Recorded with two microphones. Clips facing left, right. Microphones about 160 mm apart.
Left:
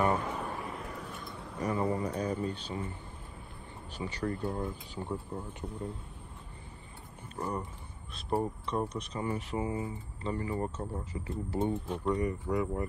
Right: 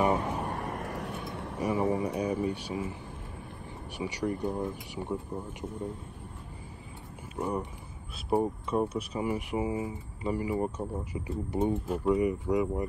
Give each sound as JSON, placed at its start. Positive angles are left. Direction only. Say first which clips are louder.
{"t": 0.5, "sound": "vehicle", "louder": "right 4 dB", "side_deg": -70}
{"t": 1.6, "sound": "speech", "louder": "right 3 dB", "side_deg": -10}
{"t": 4.0, "sound": "speech", "louder": "right 3 dB", "side_deg": -15}
{"t": 7.3, "sound": "speech", "louder": "right 4 dB", "side_deg": -10}